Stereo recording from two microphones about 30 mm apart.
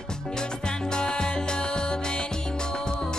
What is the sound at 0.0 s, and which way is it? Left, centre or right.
Music, left.